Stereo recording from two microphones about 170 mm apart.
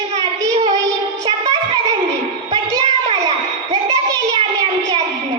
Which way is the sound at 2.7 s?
25° right (ahead or behind).